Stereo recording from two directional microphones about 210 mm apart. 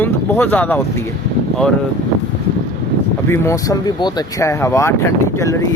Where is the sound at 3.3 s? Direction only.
15° left (ahead or behind).